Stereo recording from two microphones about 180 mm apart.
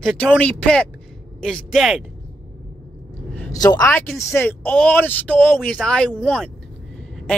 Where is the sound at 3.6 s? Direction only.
20° left (ahead or behind).